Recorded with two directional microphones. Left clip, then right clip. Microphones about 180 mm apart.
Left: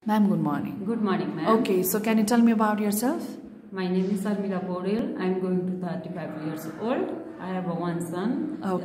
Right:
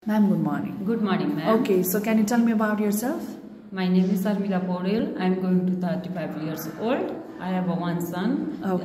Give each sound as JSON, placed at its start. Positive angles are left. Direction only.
{"t": 0.1, "sound": "a woman's voice", "side_deg": 20}
{"t": 0.8, "sound": "a woman's voice", "side_deg": 5}
{"t": 1.6, "sound": "a woman's voice", "side_deg": 20}
{"t": 3.7, "sound": "a woman's voice", "side_deg": 5}
{"t": 6.4, "sound": "a woman's voice", "side_deg": 5}